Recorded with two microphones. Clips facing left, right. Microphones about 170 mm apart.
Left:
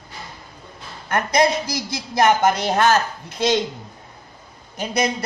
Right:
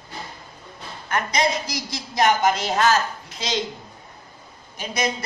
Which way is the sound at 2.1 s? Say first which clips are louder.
Left 3 dB; 55° left (ahead or behind).